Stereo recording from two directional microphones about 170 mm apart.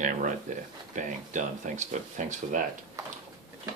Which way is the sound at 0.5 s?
45° right (ahead or behind).